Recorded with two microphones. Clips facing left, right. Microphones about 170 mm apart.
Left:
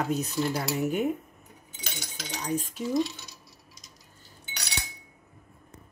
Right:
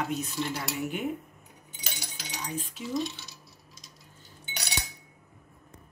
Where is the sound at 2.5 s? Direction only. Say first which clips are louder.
Left 9 dB; 40° left (ahead or behind).